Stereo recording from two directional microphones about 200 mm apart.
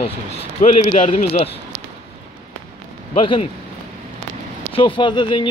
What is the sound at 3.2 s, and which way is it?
Speech, 25° left (ahead or behind).